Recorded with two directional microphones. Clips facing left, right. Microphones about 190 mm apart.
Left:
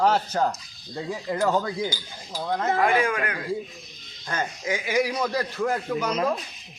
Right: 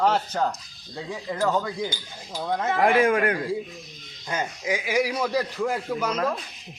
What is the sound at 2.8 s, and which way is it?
Speech, 50° right (ahead or behind).